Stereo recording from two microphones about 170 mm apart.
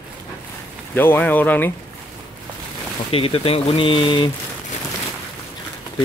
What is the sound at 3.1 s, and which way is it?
Speech, 35° left (ahead or behind).